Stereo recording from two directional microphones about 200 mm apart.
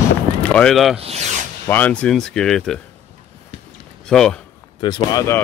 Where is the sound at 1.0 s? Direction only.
30° right (ahead or behind).